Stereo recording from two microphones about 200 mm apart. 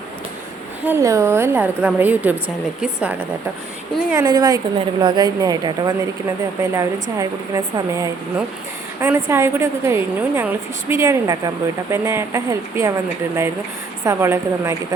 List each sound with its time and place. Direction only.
0.9 s a woman's voice: 15° right (ahead or behind)
4.1 s a woman's voice: 20° right (ahead or behind)
14.0 s a woman's voice: 15° right (ahead or behind)